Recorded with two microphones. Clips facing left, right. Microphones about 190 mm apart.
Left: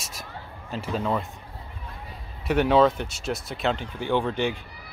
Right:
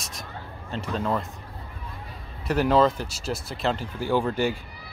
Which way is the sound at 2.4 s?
Centre (ahead or behind).